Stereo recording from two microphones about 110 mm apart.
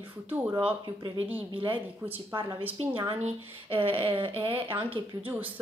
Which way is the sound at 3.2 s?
75° right (ahead or behind).